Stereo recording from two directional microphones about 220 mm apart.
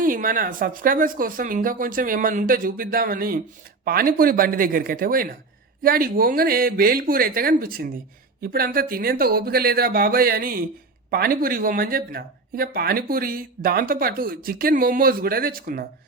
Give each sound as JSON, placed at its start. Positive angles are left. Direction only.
{"t": 0.0, "sound": "speech", "side_deg": -40}